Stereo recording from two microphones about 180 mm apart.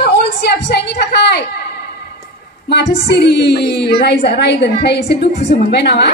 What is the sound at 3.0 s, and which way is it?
A woman's voice, 70° left (ahead or behind).